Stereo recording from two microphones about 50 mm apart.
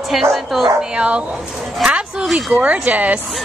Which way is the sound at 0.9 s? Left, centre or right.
Right.